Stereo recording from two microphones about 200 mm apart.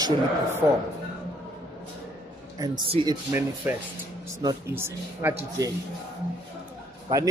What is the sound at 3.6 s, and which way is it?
A man's voice, 10° right (ahead or behind).